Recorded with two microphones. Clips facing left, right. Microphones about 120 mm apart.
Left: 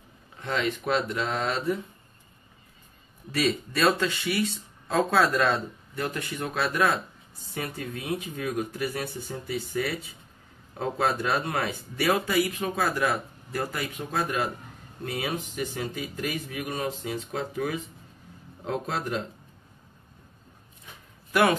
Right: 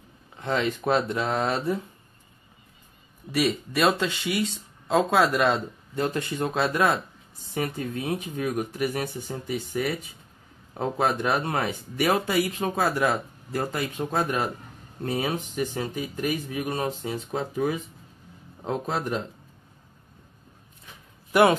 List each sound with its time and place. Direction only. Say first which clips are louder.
0.4 s speech: right 2 dB; 30° right (ahead or behind)
3.3 s speech: right 1 dB; 15° right (ahead or behind)
21.3 s speech: right 4 dB; 20° right (ahead or behind)